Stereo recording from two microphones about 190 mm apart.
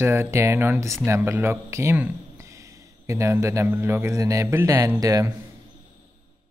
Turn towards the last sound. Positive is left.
turn(degrees=-20)  # may be behind; listen again after turning